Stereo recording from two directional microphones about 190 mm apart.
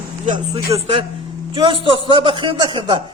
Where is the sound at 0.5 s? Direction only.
30° right (ahead or behind).